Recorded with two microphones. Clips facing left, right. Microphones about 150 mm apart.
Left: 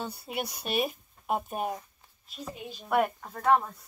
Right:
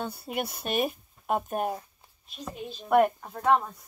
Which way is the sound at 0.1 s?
55° right (ahead or behind).